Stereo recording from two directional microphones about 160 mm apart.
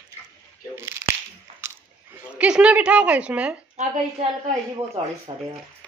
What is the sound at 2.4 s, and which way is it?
A woman's voice, 10° right (ahead or behind).